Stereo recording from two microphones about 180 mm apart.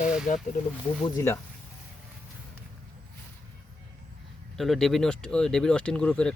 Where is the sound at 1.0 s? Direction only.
15° left (ahead or behind).